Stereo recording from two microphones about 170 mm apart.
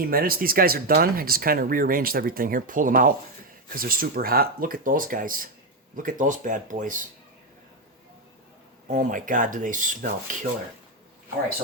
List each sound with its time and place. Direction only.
0.0 s speech: 60° right (ahead or behind)
8.9 s speech: 50° right (ahead or behind)